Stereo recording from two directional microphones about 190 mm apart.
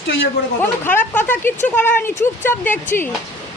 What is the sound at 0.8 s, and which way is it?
Speech, 10° left (ahead or behind).